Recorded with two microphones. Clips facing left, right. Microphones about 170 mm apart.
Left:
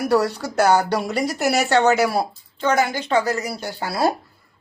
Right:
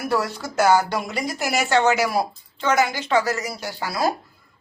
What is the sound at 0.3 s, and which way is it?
Speech, 70° left (ahead or behind).